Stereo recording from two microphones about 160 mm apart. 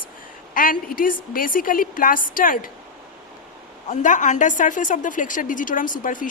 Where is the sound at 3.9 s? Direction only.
50° left (ahead or behind).